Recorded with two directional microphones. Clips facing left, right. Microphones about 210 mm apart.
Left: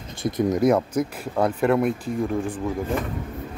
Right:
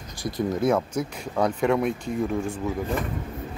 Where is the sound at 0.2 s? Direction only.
20° left (ahead or behind); by 2.0 s centre (ahead or behind).